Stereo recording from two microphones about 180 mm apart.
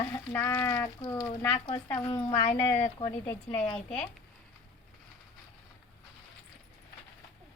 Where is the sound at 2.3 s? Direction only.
30° left (ahead or behind).